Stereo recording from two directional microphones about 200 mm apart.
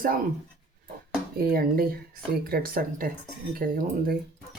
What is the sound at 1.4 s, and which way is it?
Speech, 45° right (ahead or behind).